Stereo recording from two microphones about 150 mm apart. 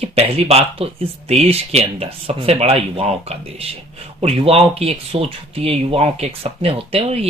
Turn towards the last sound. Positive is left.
turn(degrees=-40)  # may be behind; listen again after turning